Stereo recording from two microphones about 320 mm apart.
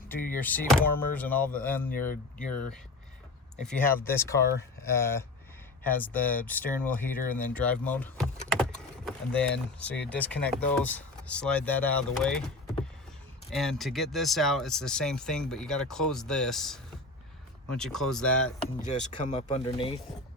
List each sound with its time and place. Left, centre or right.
0.3 s speech: centre
18.9 s speech: left